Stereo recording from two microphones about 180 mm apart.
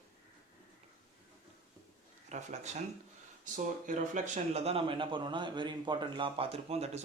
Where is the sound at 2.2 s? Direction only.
40° right (ahead or behind).